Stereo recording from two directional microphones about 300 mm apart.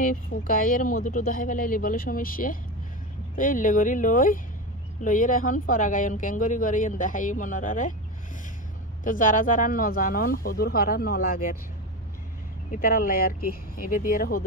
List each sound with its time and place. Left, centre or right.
0.0 s a woman's voice: left
9.0 s a woman's voice: left
12.7 s a woman's voice: left